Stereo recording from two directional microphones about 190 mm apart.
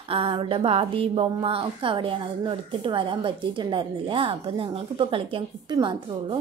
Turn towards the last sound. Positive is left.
turn(degrees=-25)  # may be behind; listen again after turning